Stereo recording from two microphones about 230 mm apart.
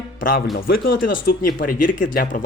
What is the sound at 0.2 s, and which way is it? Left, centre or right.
A man's voice, left.